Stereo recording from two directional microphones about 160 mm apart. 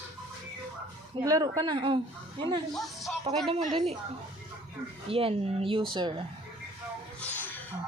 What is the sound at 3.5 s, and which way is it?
Speech, 35° right (ahead or behind).